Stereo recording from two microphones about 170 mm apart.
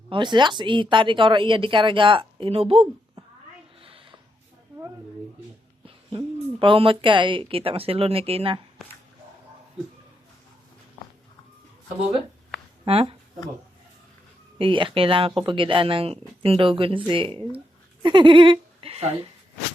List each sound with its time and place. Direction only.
0.1 s speech: 25° right (ahead or behind)
3.2 s a sound: 35° right (ahead or behind)
5.8 s speech: 30° right (ahead or behind)
12.8 s speech: 35° right (ahead or behind)
14.6 s speech: 30° right (ahead or behind)